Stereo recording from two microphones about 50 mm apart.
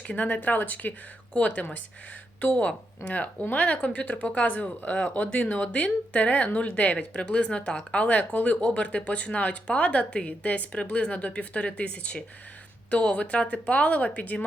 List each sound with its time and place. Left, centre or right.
0.1 s speech: left
8.0 s speech: left